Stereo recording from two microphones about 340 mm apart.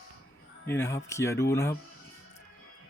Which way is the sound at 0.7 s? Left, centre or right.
Centre.